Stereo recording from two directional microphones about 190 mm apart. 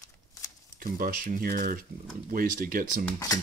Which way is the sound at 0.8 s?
45° right (ahead or behind).